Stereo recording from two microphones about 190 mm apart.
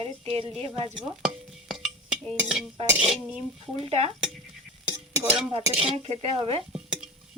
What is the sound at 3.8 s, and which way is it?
Speech, 35° right (ahead or behind).